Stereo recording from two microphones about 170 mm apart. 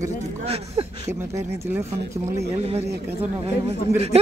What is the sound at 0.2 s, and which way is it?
Speech, 40° right (ahead or behind).